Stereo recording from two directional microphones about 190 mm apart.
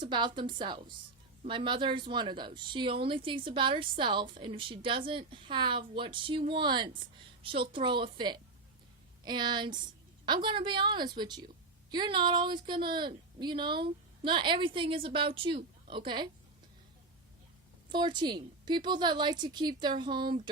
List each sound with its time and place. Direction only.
0.0 s a woman's voice: 25° right (ahead or behind)
17.8 s a woman's voice: 25° right (ahead or behind)